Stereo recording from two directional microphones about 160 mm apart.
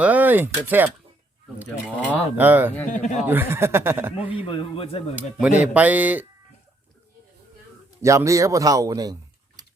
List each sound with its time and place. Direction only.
0.0 s speech: 10° right (ahead or behind)
2.0 s speech: 10° right (ahead or behind)
2.9 s speech: 50° left (ahead or behind)
3.2 s speech: 15° right (ahead or behind)
4.4 s a man's voice: 35° left (ahead or behind)
5.5 s speech: 10° right (ahead or behind)
8.0 s speech: 20° right (ahead or behind)
9.6 s a sound: 25° right (ahead or behind)